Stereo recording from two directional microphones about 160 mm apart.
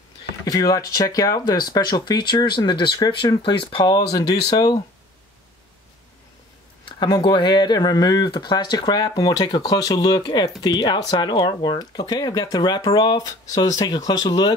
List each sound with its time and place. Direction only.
0.5 s speech: 20° left (ahead or behind)
7.0 s speech: 25° left (ahead or behind)